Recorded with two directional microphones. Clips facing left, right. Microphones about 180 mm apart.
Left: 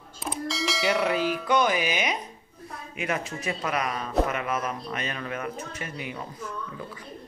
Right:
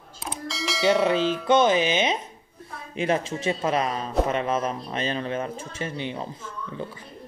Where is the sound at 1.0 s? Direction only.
25° right (ahead or behind).